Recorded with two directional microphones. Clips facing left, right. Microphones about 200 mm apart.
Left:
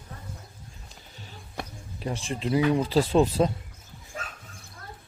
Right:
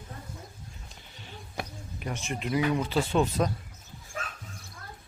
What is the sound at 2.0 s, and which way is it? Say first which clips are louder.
Speech: left 3 dB; 30° left (ahead or behind).